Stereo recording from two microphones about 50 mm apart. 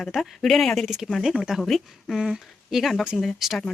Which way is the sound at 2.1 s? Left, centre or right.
Centre.